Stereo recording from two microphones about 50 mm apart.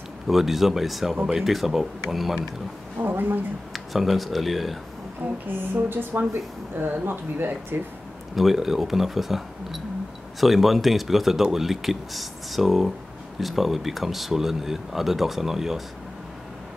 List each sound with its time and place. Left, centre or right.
0.3 s speech: centre
3.0 s speech: right
3.7 s speech: centre
5.5 s speech: right
8.4 s speech: centre